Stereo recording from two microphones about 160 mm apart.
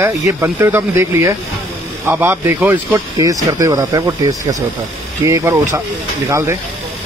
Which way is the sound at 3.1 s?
25° right (ahead or behind).